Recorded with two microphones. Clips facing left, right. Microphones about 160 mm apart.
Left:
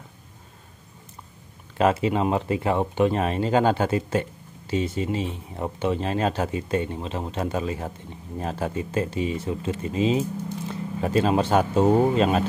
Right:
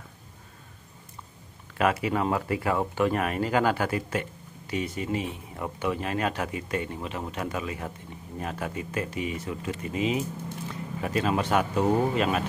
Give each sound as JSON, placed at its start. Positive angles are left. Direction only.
{"t": 1.8, "sound": "speech", "side_deg": 25}